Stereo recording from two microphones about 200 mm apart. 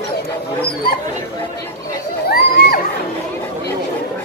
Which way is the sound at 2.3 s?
50° left (ahead or behind).